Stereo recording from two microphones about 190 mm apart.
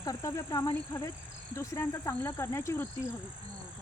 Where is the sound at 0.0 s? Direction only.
20° left (ahead or behind).